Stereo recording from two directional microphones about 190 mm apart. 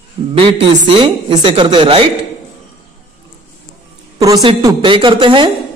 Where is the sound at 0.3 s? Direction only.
30° right (ahead or behind).